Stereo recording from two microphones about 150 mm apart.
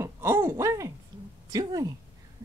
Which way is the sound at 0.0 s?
15° right (ahead or behind).